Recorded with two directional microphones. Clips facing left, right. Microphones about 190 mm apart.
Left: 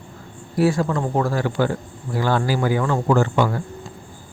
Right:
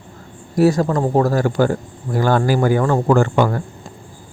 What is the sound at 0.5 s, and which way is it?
Speech, 40° right (ahead or behind).